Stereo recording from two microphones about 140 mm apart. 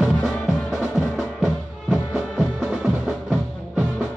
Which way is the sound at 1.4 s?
Centre (ahead or behind).